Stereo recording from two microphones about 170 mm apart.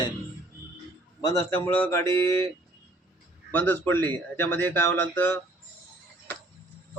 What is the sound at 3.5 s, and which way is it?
Speech, 10° left (ahead or behind).